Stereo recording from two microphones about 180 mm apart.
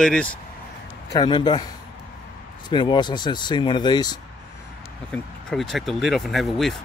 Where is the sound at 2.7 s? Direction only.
25° left (ahead or behind).